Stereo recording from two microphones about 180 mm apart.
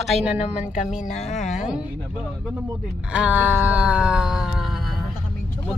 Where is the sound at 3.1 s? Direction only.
5° right (ahead or behind).